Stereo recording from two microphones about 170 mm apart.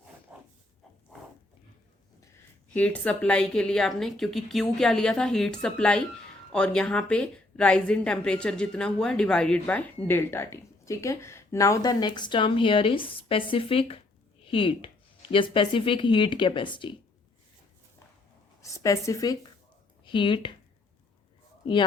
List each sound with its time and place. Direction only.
0.3 s a sound: 10° right (ahead or behind)
2.7 s a woman's voice: 10° left (ahead or behind); by 16.9 s 30° left (ahead or behind)
18.6 s speech: 20° left (ahead or behind)
21.6 s a man's voice: 30° left (ahead or behind)